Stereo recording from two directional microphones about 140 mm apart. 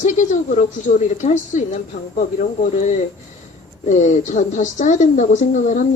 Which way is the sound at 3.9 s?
60° left (ahead or behind).